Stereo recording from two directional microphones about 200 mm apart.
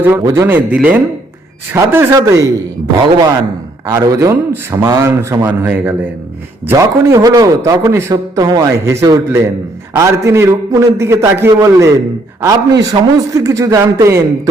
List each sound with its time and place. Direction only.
0.0 s a man's voice: 15° right (ahead or behind)
3.8 s a man's voice: 15° right (ahead or behind)